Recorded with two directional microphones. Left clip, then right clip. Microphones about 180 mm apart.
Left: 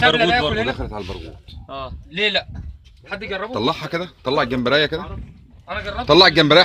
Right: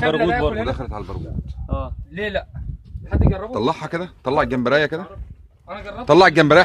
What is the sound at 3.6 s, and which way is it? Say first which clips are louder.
A man's voice: right 1 dB; 25° right (ahead or behind).